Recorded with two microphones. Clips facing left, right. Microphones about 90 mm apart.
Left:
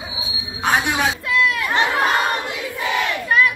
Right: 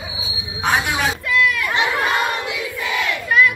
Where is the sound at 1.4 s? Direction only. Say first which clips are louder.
Right 1 dB; 30° left (ahead or behind).